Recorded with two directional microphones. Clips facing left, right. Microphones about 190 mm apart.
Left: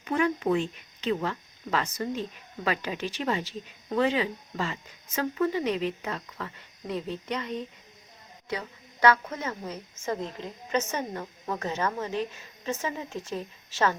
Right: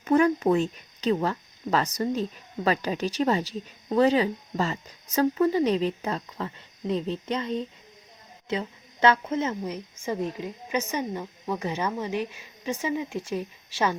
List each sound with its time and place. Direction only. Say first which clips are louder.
0.0 s a woman's voice: right 6 dB; 40° right (ahead or behind); by 13.9 s 10° right (ahead or behind)